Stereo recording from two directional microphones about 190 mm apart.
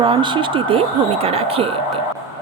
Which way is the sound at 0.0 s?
25° right (ahead or behind).